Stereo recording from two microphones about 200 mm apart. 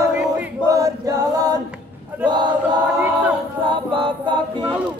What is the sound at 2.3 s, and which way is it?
Choir, 20° right (ahead or behind).